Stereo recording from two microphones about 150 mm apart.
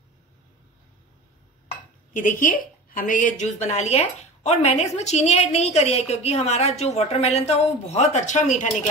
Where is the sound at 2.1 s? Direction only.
65° left (ahead or behind).